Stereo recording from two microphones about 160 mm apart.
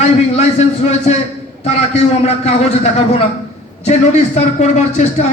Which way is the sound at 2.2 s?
40° left (ahead or behind).